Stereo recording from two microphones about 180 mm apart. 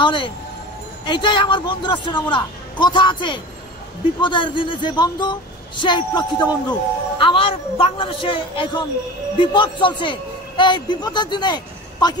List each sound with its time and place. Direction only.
0.0 s a woman's voice: 30° left (ahead or behind)